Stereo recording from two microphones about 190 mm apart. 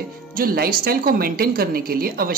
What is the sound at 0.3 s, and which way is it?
A woman's voice, 50° right (ahead or behind).